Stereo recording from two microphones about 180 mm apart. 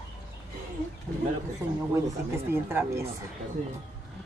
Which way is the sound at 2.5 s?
15° right (ahead or behind).